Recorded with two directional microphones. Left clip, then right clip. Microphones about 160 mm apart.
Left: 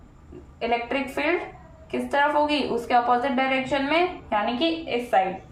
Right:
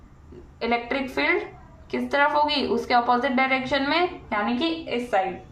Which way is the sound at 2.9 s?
25° right (ahead or behind).